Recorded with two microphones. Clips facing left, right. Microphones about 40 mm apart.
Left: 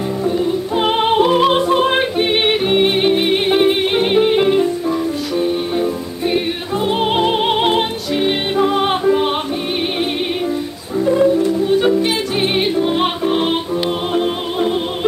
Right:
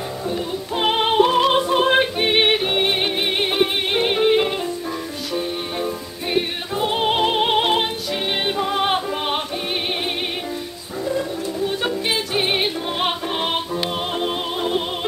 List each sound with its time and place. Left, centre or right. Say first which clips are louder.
0.2 s music: left 8 dB; centre
11.1 s music: left 11 dB; left
12.0 s music: left 5 dB; centre